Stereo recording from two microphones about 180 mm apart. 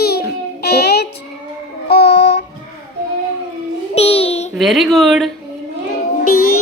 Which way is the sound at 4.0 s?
35° left (ahead or behind).